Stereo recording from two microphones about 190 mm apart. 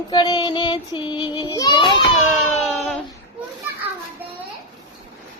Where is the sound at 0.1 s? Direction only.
25° left (ahead or behind).